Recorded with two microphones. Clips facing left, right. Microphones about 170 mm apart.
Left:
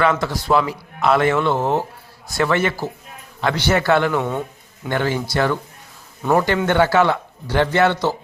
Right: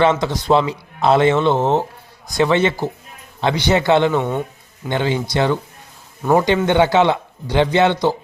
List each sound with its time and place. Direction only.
0.0 s a man's voice: 25° right (ahead or behind)